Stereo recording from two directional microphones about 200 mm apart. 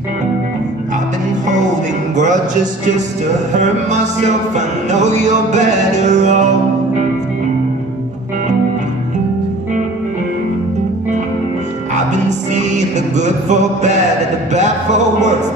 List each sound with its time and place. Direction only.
3.5 s music: 35° right (ahead or behind)
11.9 s music: 35° right (ahead or behind)